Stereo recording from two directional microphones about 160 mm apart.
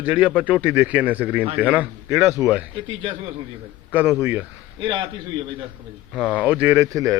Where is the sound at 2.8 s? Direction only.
35° right (ahead or behind).